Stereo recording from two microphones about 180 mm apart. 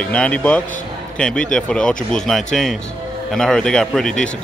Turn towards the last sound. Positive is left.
turn(degrees=5)  # may be behind; listen again after turning